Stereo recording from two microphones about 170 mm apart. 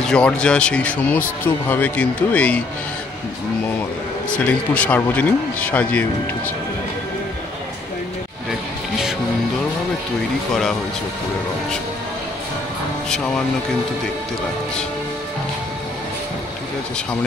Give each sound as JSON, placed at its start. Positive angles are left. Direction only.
{"t": 0.0, "sound": "speech", "side_deg": 5}
{"t": 4.3, "sound": "speech", "side_deg": 10}
{"t": 10.5, "sound": "speech", "side_deg": 5}